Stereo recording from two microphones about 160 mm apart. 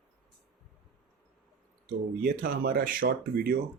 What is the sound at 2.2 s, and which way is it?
Speech, 65° right (ahead or behind).